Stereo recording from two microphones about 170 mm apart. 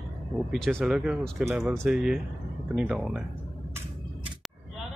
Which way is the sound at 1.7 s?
5° right (ahead or behind).